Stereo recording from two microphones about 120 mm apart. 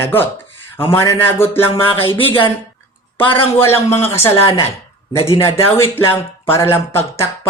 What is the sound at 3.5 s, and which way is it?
Speech, 20° left (ahead or behind).